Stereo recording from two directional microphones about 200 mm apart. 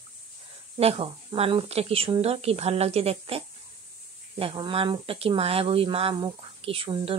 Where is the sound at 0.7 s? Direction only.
30° right (ahead or behind).